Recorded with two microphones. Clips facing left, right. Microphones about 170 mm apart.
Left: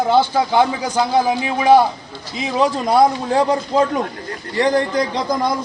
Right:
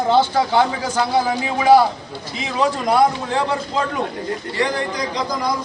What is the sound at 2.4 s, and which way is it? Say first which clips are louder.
Speech: left 3 dB; 30° left (ahead or behind).